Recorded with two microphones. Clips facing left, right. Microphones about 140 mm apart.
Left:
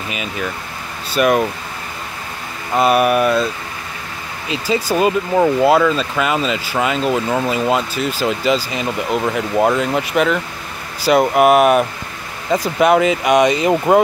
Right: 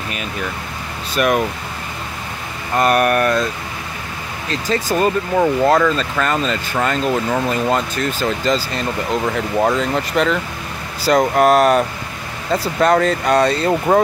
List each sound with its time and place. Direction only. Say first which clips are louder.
1.1 s speech: left 2 dB; centre (ahead or behind)
2.7 s speech: left 1 dB; 5° left (ahead or behind)
4.5 s speech: left 1 dB; 10° left (ahead or behind)